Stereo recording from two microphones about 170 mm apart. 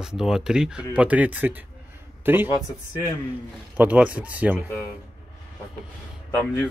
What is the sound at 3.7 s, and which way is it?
Speech, 10° right (ahead or behind).